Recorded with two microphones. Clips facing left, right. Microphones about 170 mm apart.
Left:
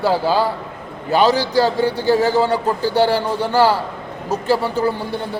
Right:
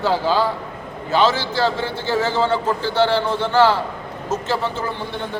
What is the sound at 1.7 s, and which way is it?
Speech, 40° left (ahead or behind).